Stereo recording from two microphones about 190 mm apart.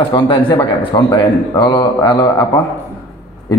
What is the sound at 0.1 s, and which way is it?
A man's voice, 25° left (ahead or behind).